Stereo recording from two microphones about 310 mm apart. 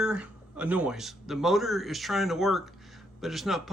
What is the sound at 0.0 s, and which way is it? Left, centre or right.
A man's voice, centre.